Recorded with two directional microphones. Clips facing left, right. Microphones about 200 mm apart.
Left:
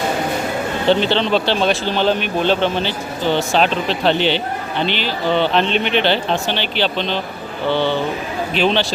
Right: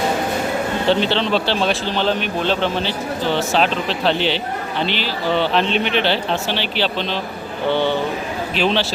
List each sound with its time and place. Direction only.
0.9 s a man's voice: centre (ahead or behind)
7.7 s speech: 15° right (ahead or behind)
8.5 s a man's voice: 5° right (ahead or behind)